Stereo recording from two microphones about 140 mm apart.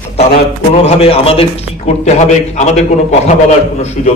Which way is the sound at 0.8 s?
45° left (ahead or behind).